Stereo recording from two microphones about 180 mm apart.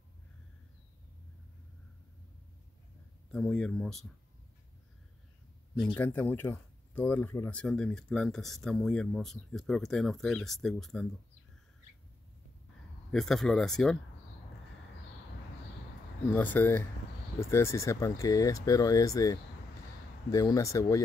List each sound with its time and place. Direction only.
3.3 s speech: 5° left (ahead or behind)
5.9 s speech: 10° left (ahead or behind)
13.1 s speech: centre (ahead or behind)
16.3 s speech: 10° left (ahead or behind)